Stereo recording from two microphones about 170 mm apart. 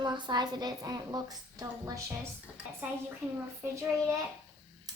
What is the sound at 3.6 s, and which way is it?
Child singing, 15° right (ahead or behind).